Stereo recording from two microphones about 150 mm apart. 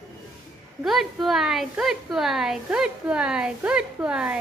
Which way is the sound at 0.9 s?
Centre (ahead or behind).